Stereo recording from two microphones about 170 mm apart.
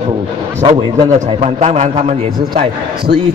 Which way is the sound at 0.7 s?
35° right (ahead or behind).